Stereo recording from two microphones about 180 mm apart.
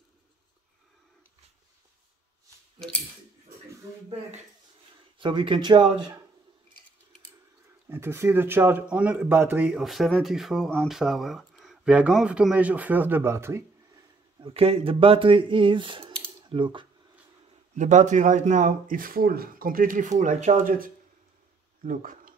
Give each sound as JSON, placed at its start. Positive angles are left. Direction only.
{"t": 5.2, "sound": "speech", "side_deg": -30}
{"t": 7.9, "sound": "speech", "side_deg": -15}
{"t": 14.4, "sound": "speech", "side_deg": -35}
{"t": 17.7, "sound": "speech", "side_deg": -40}